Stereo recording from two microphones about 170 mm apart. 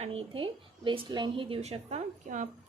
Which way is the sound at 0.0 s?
35° right (ahead or behind).